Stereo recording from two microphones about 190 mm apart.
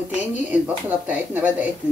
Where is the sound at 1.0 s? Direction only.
10° right (ahead or behind).